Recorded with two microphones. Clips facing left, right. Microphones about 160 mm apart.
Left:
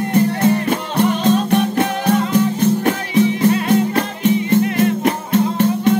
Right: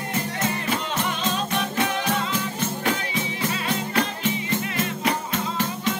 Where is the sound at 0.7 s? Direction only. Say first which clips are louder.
Left 9 dB; 55° left (ahead or behind).